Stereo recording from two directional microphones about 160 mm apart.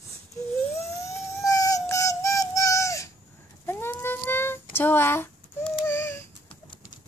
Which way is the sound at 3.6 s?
15° left (ahead or behind).